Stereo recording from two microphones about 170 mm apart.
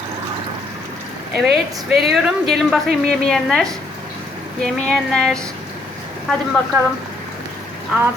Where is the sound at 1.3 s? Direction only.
Centre (ahead or behind).